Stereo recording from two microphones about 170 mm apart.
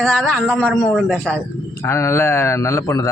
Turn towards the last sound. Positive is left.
turn(degrees=15)  # may be behind; listen again after turning